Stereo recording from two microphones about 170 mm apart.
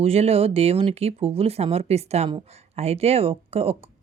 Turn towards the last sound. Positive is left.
turn(degrees=-35)  # may be behind; listen again after turning